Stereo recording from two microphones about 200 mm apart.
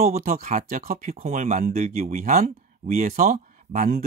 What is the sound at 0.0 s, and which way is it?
Speech, 45° right (ahead or behind).